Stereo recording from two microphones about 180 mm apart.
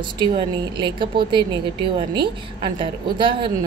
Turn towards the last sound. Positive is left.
turn(degrees=-25)  # may be behind; listen again after turning